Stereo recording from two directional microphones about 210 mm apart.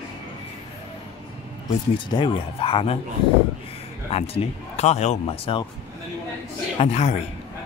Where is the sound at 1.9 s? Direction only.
25° left (ahead or behind).